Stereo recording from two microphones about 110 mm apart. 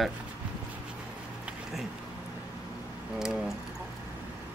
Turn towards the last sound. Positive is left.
turn(degrees=-5)  # may be behind; listen again after turning